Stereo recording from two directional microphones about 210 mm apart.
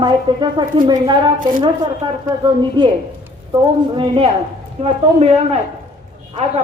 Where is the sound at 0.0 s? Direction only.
20° right (ahead or behind).